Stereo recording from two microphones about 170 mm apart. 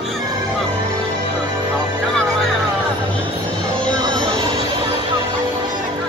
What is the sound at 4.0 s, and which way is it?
Music, 25° right (ahead or behind).